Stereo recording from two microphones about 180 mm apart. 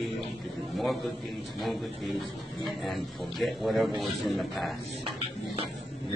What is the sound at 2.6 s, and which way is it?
A man's voice, centre (ahead or behind).